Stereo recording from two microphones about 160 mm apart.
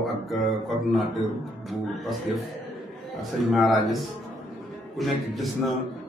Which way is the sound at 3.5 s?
Centre (ahead or behind).